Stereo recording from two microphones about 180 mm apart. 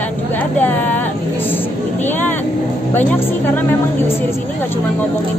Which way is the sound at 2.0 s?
10° left (ahead or behind).